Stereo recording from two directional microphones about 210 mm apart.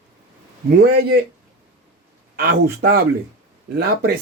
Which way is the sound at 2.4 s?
45° right (ahead or behind).